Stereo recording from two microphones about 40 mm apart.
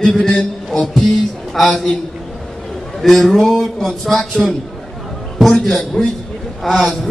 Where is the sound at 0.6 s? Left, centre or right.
Centre.